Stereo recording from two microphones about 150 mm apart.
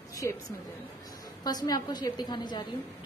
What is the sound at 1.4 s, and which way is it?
A woman's voice, 25° left (ahead or behind).